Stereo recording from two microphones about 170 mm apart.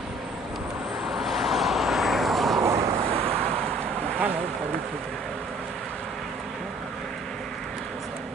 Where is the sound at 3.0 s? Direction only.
35° right (ahead or behind).